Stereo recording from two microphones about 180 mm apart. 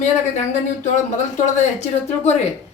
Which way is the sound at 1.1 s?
40° left (ahead or behind).